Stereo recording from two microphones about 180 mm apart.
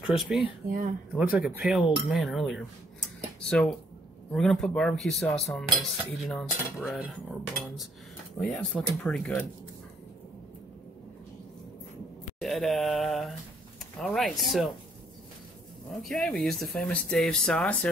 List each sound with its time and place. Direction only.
0.7 s speech: 50° right (ahead or behind)
1.3 s speech: 5° right (ahead or behind)
12.4 s mantra: centre (ahead or behind)
13.9 s speech: centre (ahead or behind)
16.0 s speech: centre (ahead or behind)